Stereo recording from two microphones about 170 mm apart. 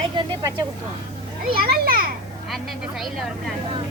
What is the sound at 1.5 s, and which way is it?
Speech, 60° right (ahead or behind).